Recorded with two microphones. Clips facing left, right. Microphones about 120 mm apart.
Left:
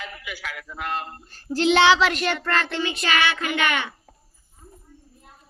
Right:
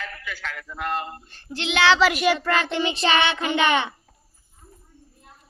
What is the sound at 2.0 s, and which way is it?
Child singing, 5° right (ahead or behind).